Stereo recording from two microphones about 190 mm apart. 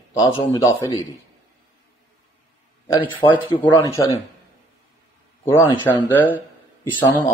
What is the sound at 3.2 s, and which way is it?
Speech, 20° left (ahead or behind).